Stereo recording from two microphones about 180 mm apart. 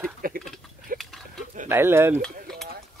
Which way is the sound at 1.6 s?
15° right (ahead or behind).